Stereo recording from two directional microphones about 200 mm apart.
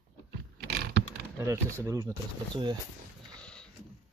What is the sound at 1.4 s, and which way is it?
Speech, 15° right (ahead or behind).